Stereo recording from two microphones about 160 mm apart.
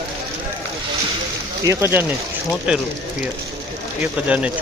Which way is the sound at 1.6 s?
15° right (ahead or behind).